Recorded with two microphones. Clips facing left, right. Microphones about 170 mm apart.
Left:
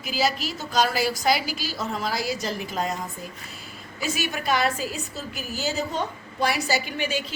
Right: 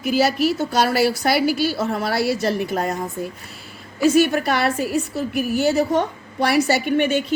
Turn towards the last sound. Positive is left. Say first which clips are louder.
# right 8 dB
turn(degrees=-60)  # may be behind; listen again after turning